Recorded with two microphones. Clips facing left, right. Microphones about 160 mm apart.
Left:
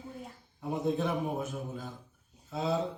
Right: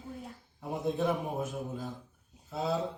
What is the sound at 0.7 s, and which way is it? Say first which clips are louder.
Speech: even; centre (ahead or behind).